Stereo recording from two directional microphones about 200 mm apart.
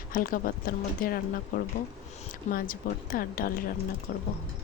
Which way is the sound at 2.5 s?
45° left (ahead or behind).